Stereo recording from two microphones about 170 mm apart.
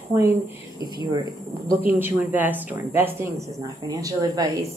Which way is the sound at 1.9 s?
10° right (ahead or behind).